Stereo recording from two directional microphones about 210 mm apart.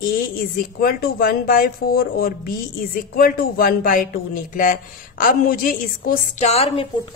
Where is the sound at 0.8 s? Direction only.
45° left (ahead or behind).